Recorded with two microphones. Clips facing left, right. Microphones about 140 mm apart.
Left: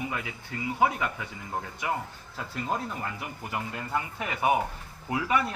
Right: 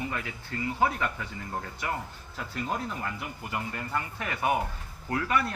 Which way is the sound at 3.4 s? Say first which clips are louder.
Left 1 dB; 15° left (ahead or behind).